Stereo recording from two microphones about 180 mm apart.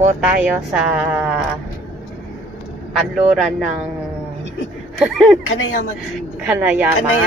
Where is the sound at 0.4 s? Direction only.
5° right (ahead or behind).